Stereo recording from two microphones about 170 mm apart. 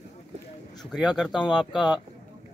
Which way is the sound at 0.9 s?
Centre (ahead or behind).